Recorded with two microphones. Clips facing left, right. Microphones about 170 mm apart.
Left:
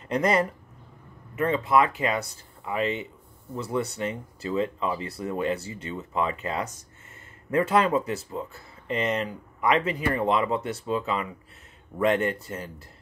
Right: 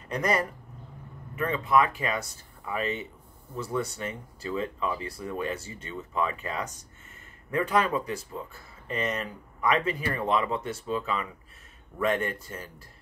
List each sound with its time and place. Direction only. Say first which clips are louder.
0.1 s speech: left 4 dB; 25° left (ahead or behind)